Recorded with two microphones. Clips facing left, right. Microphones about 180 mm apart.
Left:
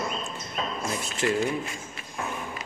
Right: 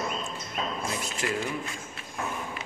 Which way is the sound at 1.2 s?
30° left (ahead or behind).